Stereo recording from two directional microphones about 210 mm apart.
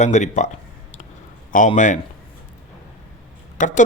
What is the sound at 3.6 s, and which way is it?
Speech, 35° left (ahead or behind).